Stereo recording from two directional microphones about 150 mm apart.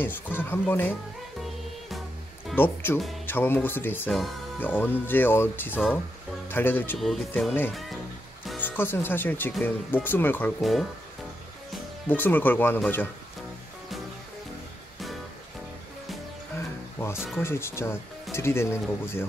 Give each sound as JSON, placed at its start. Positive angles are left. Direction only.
{"t": 0.0, "sound": "speech", "side_deg": 15}
{"t": 2.5, "sound": "speech", "side_deg": 15}
{"t": 7.0, "sound": "speech", "side_deg": 0}
{"t": 8.5, "sound": "speech", "side_deg": 15}
{"t": 10.6, "sound": "speech", "side_deg": 0}
{"t": 12.1, "sound": "speech", "side_deg": 10}
{"t": 16.5, "sound": "music", "side_deg": 15}
{"t": 17.4, "sound": "speech", "side_deg": 15}